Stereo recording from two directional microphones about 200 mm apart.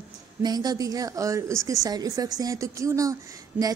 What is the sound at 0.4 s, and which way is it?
Speech, 20° right (ahead or behind).